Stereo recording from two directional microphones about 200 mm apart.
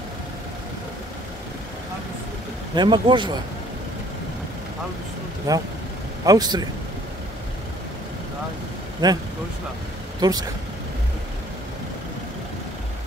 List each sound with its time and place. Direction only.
2.7 s speech: 20° right (ahead or behind)
5.5 s speech: 15° right (ahead or behind)
9.0 s speech: 20° right (ahead or behind)